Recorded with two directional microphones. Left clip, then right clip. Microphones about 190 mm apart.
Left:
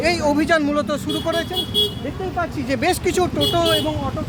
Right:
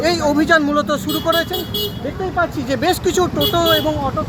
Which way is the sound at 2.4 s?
15° left (ahead or behind).